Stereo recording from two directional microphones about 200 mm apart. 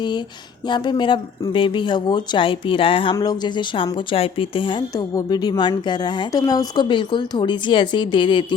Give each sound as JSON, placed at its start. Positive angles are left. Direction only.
{"t": 0.7, "sound": "speech", "side_deg": 20}